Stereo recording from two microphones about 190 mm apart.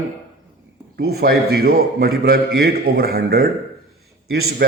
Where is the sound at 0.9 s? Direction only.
55° right (ahead or behind).